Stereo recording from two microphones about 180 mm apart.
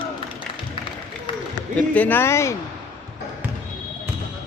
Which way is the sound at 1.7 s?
10° left (ahead or behind).